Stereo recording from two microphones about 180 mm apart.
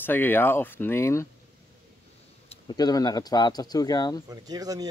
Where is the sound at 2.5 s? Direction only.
25° left (ahead or behind).